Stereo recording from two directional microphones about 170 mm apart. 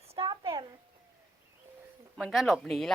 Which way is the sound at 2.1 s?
Centre (ahead or behind).